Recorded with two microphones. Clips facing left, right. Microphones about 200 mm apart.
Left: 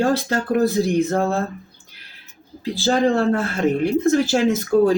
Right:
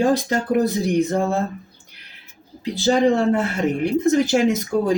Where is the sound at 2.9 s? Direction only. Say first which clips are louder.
Right 1 dB; 15° right (ahead or behind).